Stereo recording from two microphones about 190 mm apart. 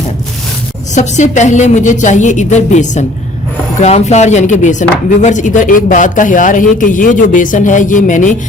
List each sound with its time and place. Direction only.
0.9 s a woman's voice: 40° left (ahead or behind)